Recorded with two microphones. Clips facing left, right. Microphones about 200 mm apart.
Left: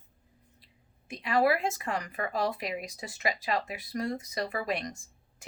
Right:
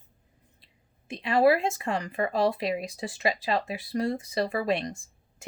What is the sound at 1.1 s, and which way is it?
Speech, 25° right (ahead or behind).